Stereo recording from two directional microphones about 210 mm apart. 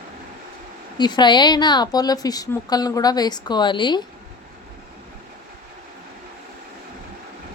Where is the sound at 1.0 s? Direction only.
20° left (ahead or behind).